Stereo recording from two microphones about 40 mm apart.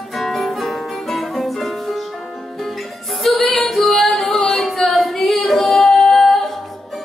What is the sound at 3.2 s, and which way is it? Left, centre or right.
Female singing, centre.